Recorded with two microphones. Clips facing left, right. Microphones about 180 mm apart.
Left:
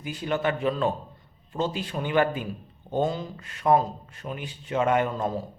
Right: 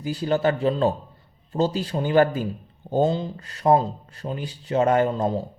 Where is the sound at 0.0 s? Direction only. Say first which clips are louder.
Right 5 dB; 35° right (ahead or behind).